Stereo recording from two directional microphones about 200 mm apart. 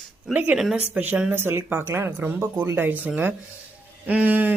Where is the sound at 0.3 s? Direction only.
5° right (ahead or behind).